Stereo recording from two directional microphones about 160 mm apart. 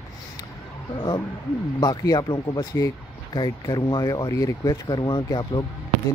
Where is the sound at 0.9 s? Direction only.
25° left (ahead or behind).